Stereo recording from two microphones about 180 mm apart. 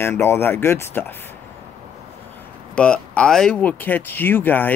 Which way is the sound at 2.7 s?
5° left (ahead or behind).